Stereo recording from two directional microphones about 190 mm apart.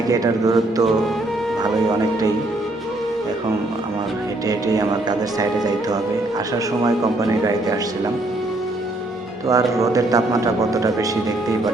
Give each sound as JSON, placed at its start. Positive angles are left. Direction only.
{"t": 0.1, "sound": "mantra", "side_deg": -20}
{"t": 4.4, "sound": "mantra", "side_deg": -20}
{"t": 6.8, "sound": "a man's voice", "side_deg": -20}
{"t": 9.5, "sound": "a man's voice", "side_deg": -20}